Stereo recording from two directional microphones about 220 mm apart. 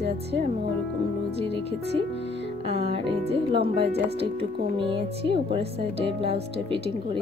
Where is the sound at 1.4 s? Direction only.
25° right (ahead or behind).